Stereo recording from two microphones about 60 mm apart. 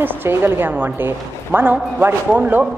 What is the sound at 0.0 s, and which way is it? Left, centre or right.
A woman's voice, right.